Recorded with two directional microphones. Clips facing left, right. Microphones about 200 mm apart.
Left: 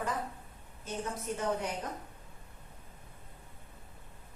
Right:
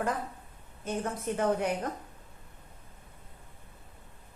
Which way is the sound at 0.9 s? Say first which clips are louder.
Right 4 dB; 55° right (ahead or behind).